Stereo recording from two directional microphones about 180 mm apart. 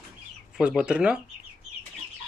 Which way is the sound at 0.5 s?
5° right (ahead or behind).